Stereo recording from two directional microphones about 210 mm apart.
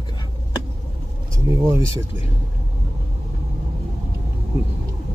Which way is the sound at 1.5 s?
15° right (ahead or behind).